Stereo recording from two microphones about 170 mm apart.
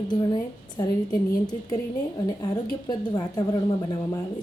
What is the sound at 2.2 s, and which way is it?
A woman's voice, 20° left (ahead or behind).